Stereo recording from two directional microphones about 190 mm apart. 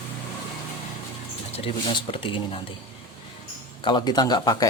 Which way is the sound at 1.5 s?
30° left (ahead or behind).